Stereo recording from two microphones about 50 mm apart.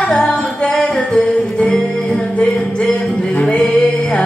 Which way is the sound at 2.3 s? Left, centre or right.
Left.